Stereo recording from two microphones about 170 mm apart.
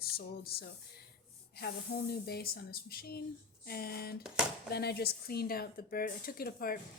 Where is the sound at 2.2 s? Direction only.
65° left (ahead or behind).